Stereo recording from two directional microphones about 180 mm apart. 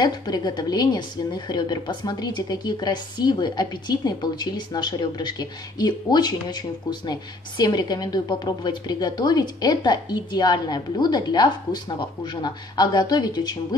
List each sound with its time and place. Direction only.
0.0 s a woman's voice: 25° left (ahead or behind)